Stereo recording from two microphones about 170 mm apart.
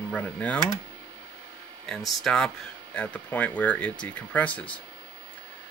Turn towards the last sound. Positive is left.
turn(degrees=10)  # may be behind; listen again after turning